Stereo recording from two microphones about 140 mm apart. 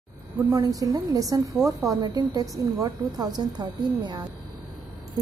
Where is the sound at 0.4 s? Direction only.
20° right (ahead or behind).